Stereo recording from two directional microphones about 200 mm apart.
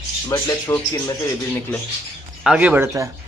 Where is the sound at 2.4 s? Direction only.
5° right (ahead or behind).